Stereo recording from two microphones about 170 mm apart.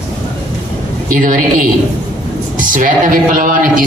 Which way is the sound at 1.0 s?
55° right (ahead or behind).